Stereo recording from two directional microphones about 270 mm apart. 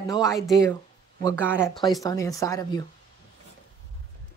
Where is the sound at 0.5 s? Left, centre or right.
Centre.